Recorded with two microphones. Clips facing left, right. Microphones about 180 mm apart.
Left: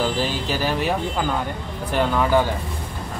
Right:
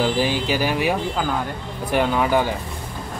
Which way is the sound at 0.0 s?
10° right (ahead or behind).